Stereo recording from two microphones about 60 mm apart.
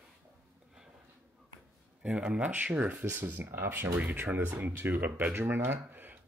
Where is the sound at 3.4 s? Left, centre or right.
Right.